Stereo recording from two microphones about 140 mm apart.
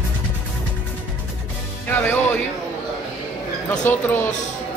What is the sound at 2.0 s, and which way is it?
Music, 15° left (ahead or behind).